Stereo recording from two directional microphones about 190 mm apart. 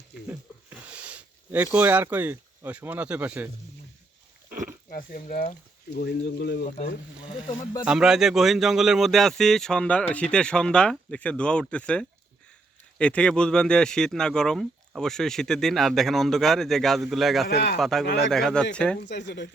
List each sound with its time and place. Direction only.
0.9 s speech: 5° right (ahead or behind)
4.4 s pig: 40° right (ahead or behind)
4.9 s speech: 45° left (ahead or behind)
6.0 s speech: 60° left (ahead or behind)
6.7 s speech: 40° left (ahead or behind)
7.2 s speech: 25° left (ahead or behind)
7.9 s speech: 5° right (ahead or behind)
17.5 s speech: 60° left (ahead or behind)
17.7 s speech: centre (ahead or behind)
18.0 s speech: 60° left (ahead or behind)
18.3 s speech: 5° left (ahead or behind)
18.9 s speech: 65° left (ahead or behind)